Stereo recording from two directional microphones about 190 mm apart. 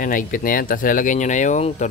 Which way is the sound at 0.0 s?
45° left (ahead or behind).